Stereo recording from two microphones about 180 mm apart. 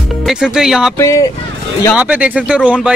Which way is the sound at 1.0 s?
15° left (ahead or behind).